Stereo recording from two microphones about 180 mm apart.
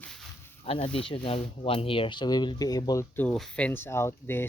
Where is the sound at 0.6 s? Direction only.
30° left (ahead or behind).